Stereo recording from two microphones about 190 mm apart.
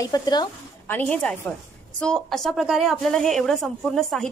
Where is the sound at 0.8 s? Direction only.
10° left (ahead or behind).